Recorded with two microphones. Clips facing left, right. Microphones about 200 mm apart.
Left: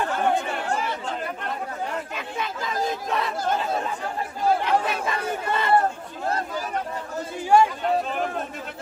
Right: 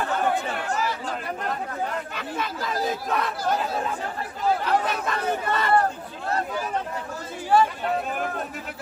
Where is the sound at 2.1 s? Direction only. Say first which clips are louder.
Even; centre (ahead or behind).